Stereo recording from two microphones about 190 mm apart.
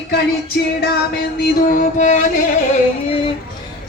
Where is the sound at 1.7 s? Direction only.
40° left (ahead or behind).